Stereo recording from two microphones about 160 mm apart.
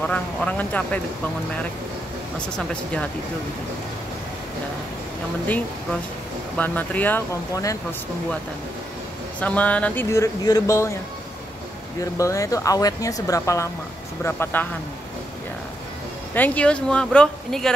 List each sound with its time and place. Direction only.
0.0 s speech: 10° left (ahead or behind)
2.3 s speech: 5° left (ahead or behind)
6.5 s speech: 10° left (ahead or behind)
9.4 s speech: 10° left (ahead or behind)
12.0 s speech: 20° left (ahead or behind)
16.3 s speech: 10° left (ahead or behind)